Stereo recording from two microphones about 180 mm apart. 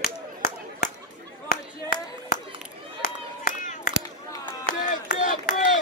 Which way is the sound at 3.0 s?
50° left (ahead or behind).